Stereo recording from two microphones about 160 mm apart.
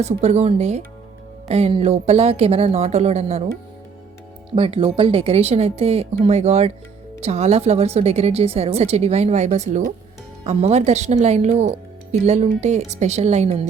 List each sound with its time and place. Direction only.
0.0 s speech: 45° right (ahead or behind)
4.5 s speech: 35° right (ahead or behind)